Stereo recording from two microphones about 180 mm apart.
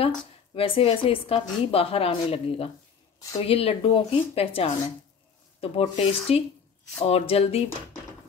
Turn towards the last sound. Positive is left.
turn(degrees=35)  # may be behind; listen again after turning